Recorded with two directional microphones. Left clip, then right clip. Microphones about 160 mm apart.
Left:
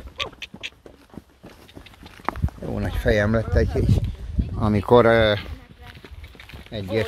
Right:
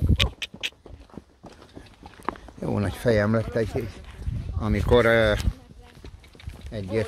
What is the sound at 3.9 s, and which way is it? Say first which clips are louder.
Speech: left 12 dB; 25° left (ahead or behind).